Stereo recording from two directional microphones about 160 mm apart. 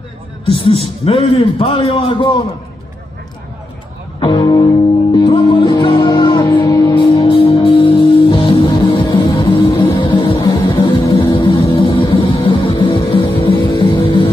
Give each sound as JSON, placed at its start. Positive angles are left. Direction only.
{"t": 0.5, "sound": "a man's voice", "side_deg": 35}
{"t": 4.2, "sound": "speech", "side_deg": 30}
{"t": 5.1, "sound": "music", "side_deg": 25}
{"t": 6.7, "sound": "music", "side_deg": 20}
{"t": 7.0, "sound": "music", "side_deg": 30}